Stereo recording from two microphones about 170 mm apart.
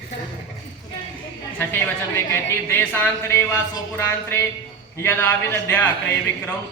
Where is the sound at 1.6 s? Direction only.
10° left (ahead or behind).